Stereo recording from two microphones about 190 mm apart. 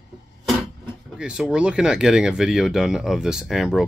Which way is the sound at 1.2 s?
5° right (ahead or behind).